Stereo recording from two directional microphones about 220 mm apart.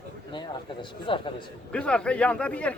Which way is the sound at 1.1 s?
20° left (ahead or behind).